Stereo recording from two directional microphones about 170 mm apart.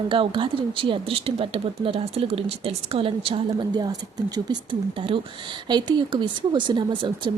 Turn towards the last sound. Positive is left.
turn(degrees=-30)  # may be behind; listen again after turning